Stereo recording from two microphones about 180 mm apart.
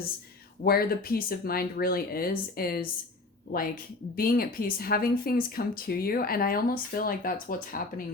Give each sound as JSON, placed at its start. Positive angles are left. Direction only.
{"t": 0.6, "sound": "speech", "side_deg": 55}
{"t": 4.1, "sound": "speech", "side_deg": 55}